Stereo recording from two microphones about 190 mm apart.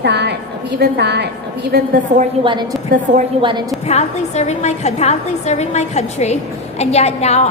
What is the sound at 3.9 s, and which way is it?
A woman's voice, 35° left (ahead or behind).